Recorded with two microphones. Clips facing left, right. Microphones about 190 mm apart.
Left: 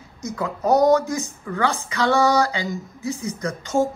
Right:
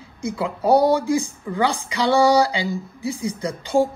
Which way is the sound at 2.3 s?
30° right (ahead or behind).